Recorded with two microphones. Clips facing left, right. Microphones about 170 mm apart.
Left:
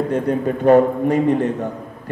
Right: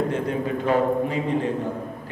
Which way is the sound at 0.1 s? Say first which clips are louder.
Left 5 dB; 45° left (ahead or behind).